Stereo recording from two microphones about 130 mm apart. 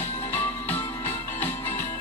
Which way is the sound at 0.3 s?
15° left (ahead or behind).